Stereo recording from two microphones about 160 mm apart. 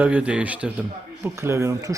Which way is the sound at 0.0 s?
10° right (ahead or behind).